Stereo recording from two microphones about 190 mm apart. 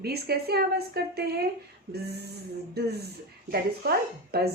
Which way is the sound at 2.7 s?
55° right (ahead or behind).